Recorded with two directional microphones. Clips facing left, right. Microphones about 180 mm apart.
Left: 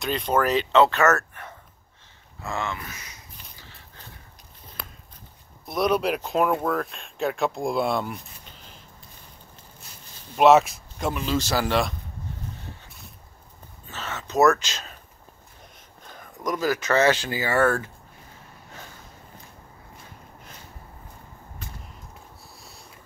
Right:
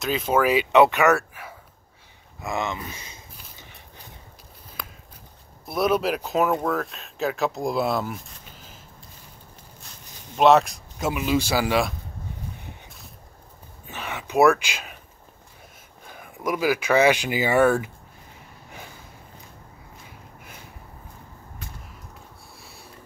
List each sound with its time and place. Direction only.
0.0 s speech: 5° right (ahead or behind); by 3.2 s 25° right (ahead or behind)
3.5 s a sound: 15° right (ahead or behind)
5.7 s speech: 5° right (ahead or behind)
10.3 s speech: 5° left (ahead or behind)
13.8 s speech: 15° right (ahead or behind)
16.0 s speech: 10° right (ahead or behind)